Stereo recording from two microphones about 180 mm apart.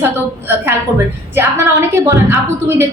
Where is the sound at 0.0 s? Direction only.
10° right (ahead or behind).